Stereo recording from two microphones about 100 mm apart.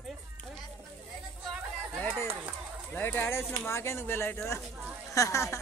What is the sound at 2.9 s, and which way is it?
Speech, 20° left (ahead or behind).